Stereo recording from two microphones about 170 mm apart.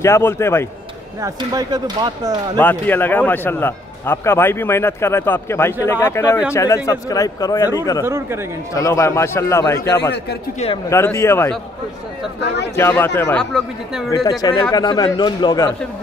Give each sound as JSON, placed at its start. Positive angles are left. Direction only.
{"t": 0.0, "sound": "a man's voice", "side_deg": 15}
{"t": 1.2, "sound": "speech", "side_deg": -20}
{"t": 2.5, "sound": "a man's voice", "side_deg": 10}
{"t": 8.1, "sound": "speech", "side_deg": -15}
{"t": 8.7, "sound": "a man's voice", "side_deg": 20}
{"t": 12.4, "sound": "speech", "side_deg": 90}
{"t": 12.7, "sound": "a man's voice", "side_deg": 15}
{"t": 13.4, "sound": "speech", "side_deg": 0}
{"t": 14.4, "sound": "speech", "side_deg": 20}